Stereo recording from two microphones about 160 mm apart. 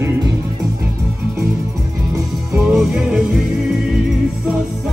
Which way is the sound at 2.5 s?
Centre (ahead or behind).